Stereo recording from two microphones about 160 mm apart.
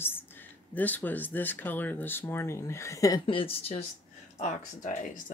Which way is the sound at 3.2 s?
35° left (ahead or behind).